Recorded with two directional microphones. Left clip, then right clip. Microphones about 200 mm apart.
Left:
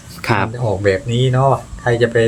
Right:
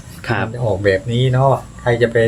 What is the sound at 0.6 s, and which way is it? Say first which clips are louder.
A man's voice: right 2 dB; 10° left (ahead or behind).